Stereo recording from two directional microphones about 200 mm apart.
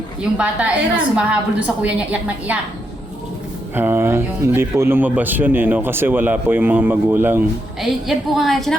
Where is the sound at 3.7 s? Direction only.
10° right (ahead or behind).